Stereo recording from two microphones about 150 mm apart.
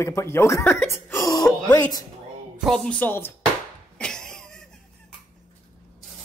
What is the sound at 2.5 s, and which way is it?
Speech, 5° left (ahead or behind).